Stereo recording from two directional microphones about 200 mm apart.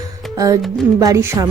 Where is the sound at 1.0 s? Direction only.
15° right (ahead or behind).